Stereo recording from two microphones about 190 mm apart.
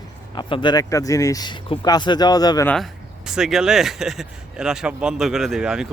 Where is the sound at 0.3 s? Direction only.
25° left (ahead or behind).